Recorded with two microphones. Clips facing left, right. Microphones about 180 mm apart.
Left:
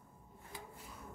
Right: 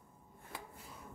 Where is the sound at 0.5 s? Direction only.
65° right (ahead or behind).